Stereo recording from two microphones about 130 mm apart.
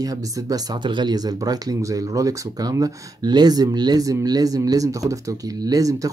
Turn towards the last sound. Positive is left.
turn(degrees=-25)  # may be behind; listen again after turning